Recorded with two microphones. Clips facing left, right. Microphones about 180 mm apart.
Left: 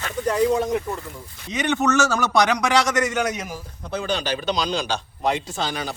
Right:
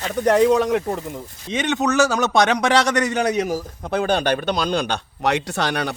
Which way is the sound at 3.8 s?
55° right (ahead or behind).